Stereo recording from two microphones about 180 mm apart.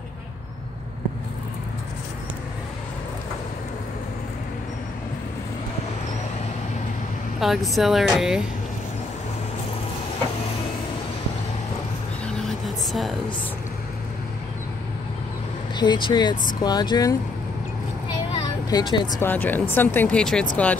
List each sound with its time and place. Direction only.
7.3 s speech: centre (ahead or behind)
12.3 s vehicle: centre (ahead or behind)
15.7 s speech: 25° left (ahead or behind)
18.3 s a sound: 25° left (ahead or behind)
19.2 s speech: 10° left (ahead or behind)